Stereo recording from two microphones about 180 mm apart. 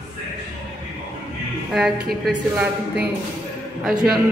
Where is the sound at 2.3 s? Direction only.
5° right (ahead or behind).